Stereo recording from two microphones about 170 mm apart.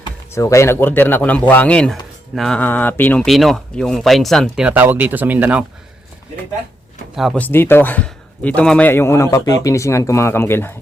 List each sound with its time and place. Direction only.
0.3 s a man's voice: 15° left (ahead or behind); by 5.6 s 10° right (ahead or behind)
7.2 s speech: centre (ahead or behind)
7.4 s a man's voice: 10° left (ahead or behind)